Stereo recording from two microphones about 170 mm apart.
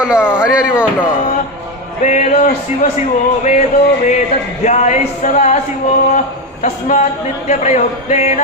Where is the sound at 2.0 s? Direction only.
45° left (ahead or behind).